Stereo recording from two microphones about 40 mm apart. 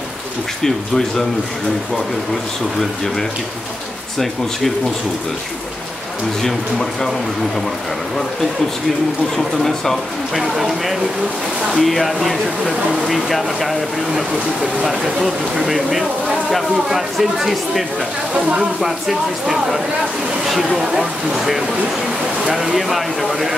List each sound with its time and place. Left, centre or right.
0.6 s speech: centre
6.4 s speech: centre
9.4 s speech: centre
18.3 s speech: right
18.8 s speech: centre